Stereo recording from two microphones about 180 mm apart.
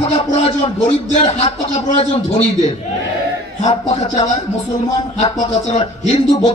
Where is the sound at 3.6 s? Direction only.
40° left (ahead or behind).